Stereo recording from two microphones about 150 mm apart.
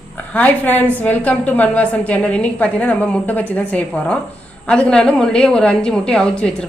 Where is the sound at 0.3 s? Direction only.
10° left (ahead or behind).